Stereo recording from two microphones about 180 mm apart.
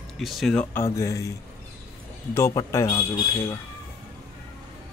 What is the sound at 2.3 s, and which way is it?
Speech, 15° left (ahead or behind).